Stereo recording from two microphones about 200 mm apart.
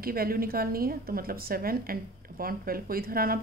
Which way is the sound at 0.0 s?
50° right (ahead or behind).